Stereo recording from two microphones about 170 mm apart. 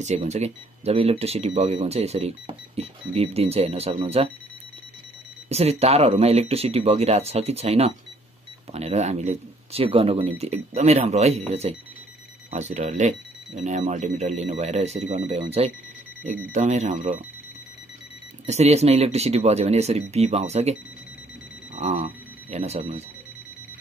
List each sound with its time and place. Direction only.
0.0 s speech: 40° right (ahead or behind)
5.5 s speech: 35° right (ahead or behind)
18.4 s speech: 40° right (ahead or behind)
21.7 s speech: 45° right (ahead or behind)